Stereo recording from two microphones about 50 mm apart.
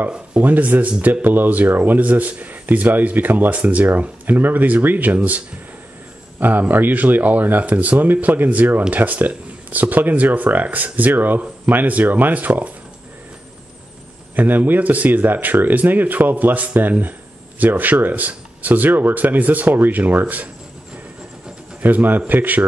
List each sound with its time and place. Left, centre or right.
0.4 s speech: right
6.7 s speech: right
14.3 s speech: right
21.8 s speech: right